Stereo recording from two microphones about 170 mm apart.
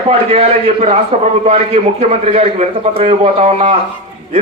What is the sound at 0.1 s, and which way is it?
A man's voice, 40° right (ahead or behind).